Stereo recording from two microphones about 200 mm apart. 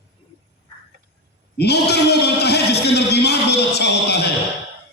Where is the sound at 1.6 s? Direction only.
55° left (ahead or behind).